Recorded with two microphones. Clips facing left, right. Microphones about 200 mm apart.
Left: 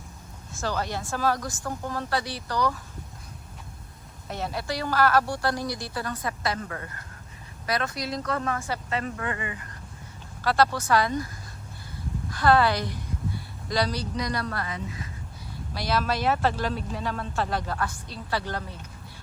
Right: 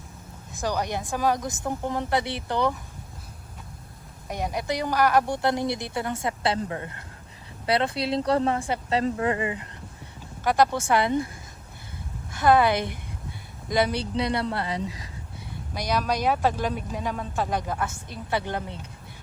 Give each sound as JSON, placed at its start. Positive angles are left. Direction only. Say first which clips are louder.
{"t": 0.5, "sound": "a woman's voice", "louder": "right 2 dB", "side_deg": -15}
{"t": 4.3, "sound": "a woman's voice", "louder": "right 3 dB", "side_deg": -15}
{"t": 8.5, "sound": "speech", "louder": "right 4 dB", "side_deg": -15}
{"t": 8.9, "sound": "a woman's voice", "louder": "right 8 dB", "side_deg": -30}
{"t": 12.4, "sound": "a woman's voice", "louder": "right 2 dB", "side_deg": -20}